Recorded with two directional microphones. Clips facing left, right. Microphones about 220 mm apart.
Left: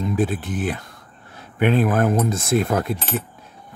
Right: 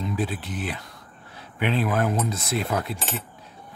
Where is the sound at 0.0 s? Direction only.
50° left (ahead or behind).